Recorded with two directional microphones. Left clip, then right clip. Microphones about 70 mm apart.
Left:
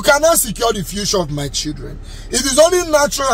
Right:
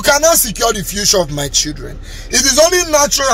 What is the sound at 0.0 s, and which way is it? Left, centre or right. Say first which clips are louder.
Speech: right 1 dB; left.